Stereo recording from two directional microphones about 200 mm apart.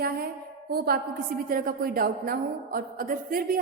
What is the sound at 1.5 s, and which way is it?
A woman's voice, 45° right (ahead or behind).